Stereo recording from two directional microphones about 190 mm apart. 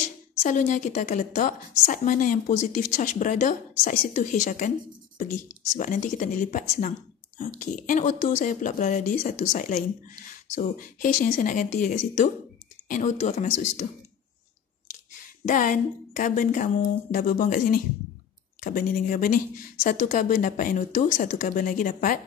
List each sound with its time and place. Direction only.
0.4 s a woman's voice: 40° left (ahead or behind)
15.4 s a woman's voice: 45° left (ahead or behind)